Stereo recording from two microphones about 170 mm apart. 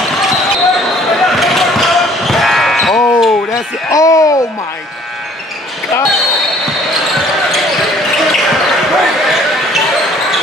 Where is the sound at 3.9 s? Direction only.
20° left (ahead or behind).